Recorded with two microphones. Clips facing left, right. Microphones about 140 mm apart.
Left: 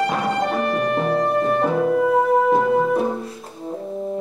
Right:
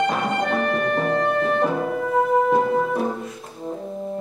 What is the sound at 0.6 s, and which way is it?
Music, 35° left (ahead or behind).